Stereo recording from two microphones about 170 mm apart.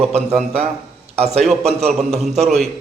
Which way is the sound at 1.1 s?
40° right (ahead or behind).